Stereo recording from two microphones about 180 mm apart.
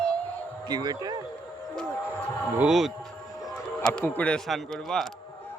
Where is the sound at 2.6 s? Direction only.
5° right (ahead or behind).